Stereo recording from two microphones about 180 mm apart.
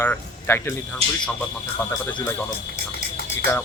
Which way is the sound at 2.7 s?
90° left.